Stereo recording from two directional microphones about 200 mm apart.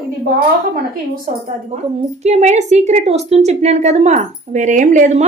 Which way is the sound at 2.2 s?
35° right (ahead or behind).